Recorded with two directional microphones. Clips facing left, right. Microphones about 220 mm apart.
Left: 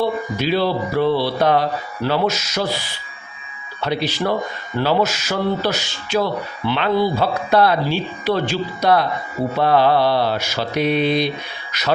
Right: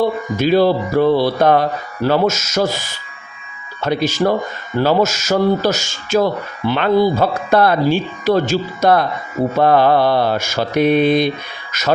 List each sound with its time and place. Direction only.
0.3 s speech: 45° right (ahead or behind)